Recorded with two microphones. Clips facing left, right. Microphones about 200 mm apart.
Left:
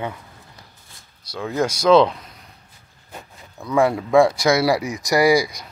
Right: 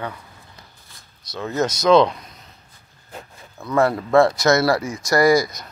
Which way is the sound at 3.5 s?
10° left (ahead or behind).